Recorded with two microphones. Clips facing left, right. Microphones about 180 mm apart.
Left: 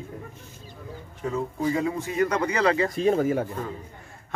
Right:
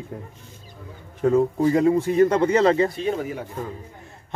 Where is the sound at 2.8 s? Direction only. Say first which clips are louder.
Left 3 dB; 40° left (ahead or behind).